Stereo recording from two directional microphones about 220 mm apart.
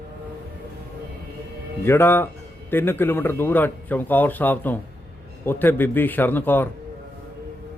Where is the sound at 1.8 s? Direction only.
10° left (ahead or behind).